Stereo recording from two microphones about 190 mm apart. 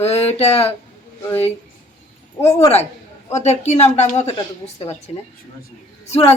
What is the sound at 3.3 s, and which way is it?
A woman's voice, 35° left (ahead or behind).